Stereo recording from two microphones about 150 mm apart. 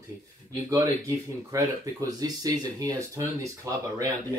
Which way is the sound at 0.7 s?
20° right (ahead or behind).